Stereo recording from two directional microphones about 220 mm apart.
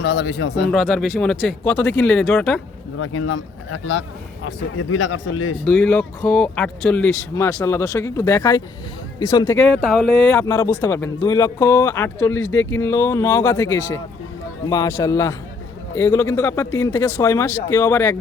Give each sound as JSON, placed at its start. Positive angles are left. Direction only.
{"t": 0.0, "sound": "speech", "side_deg": 50}
{"t": 0.7, "sound": "speech", "side_deg": 0}
{"t": 3.0, "sound": "speech", "side_deg": 65}
{"t": 5.6, "sound": "speech", "side_deg": 5}
{"t": 9.6, "sound": "speech", "side_deg": 0}
{"t": 10.3, "sound": "speech", "side_deg": 15}